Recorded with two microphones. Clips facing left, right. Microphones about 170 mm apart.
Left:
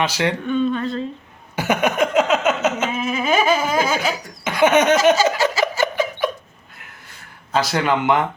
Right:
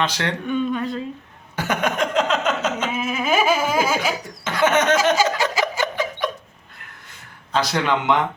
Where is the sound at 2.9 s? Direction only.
5° right (ahead or behind).